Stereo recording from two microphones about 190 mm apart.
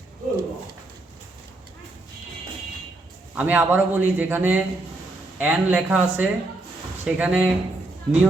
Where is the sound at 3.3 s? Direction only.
10° right (ahead or behind).